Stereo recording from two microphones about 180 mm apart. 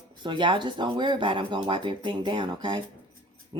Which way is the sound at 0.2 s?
25° right (ahead or behind).